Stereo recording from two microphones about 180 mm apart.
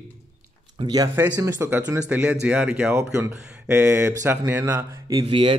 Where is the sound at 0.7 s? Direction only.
25° right (ahead or behind).